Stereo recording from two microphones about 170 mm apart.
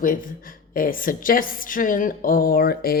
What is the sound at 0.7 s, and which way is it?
A woman's voice, 55° left (ahead or behind).